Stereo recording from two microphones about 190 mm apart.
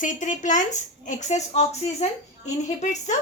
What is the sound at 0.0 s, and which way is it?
A woman's voice, 40° left (ahead or behind).